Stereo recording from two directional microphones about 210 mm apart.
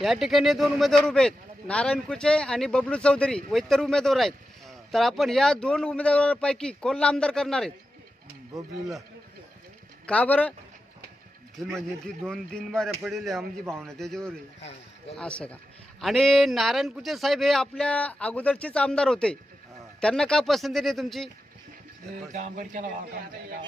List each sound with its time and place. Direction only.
0.0 s speech: centre (ahead or behind)
10.1 s speech: 5° left (ahead or behind)
11.7 s speech: 5° left (ahead or behind)
22.3 s a man's voice: 35° right (ahead or behind)